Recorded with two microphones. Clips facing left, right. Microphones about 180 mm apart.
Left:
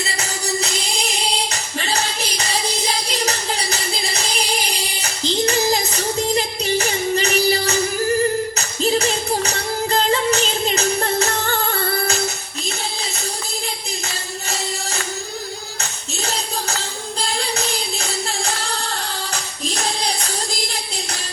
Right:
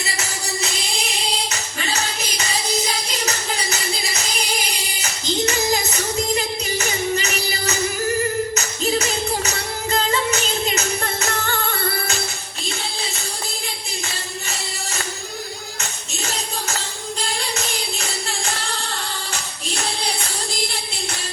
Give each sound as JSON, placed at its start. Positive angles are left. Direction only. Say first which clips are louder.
{"t": 0.2, "sound": "music", "louder": "left 4 dB", "side_deg": 35}
{"t": 15.8, "sound": "music", "louder": "left 2 dB", "side_deg": 35}